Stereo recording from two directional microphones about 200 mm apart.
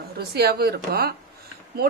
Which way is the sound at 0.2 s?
55° right (ahead or behind).